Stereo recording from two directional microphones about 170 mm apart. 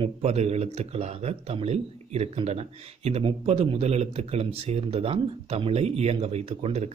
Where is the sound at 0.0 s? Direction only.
40° right (ahead or behind).